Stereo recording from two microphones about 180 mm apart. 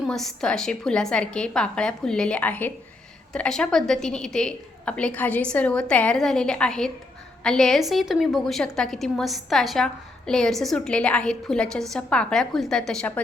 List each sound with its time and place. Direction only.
0.1 s a woman's voice: centre (ahead or behind)